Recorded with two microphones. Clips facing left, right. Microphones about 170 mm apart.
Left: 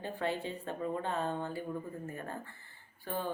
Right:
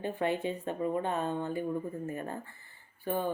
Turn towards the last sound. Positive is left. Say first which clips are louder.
# right 5 dB
turn(degrees=-15)  # may be behind; listen again after turning